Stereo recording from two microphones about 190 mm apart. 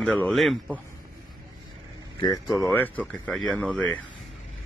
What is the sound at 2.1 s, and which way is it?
Speech, 20° left (ahead or behind).